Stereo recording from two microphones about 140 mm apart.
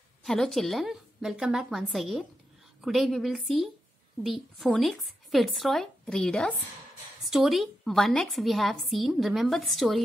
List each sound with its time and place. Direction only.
0.2 s a woman's voice: 5° left (ahead or behind)